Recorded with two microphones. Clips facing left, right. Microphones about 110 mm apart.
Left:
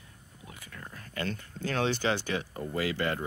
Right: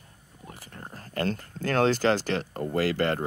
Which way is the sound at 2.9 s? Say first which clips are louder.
Right 5 dB; 50° right (ahead or behind).